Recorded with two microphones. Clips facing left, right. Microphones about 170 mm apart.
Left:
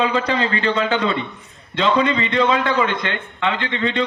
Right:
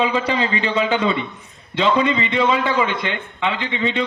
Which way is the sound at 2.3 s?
10° right (ahead or behind).